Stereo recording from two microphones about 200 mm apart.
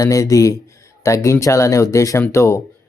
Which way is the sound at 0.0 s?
15° left (ahead or behind).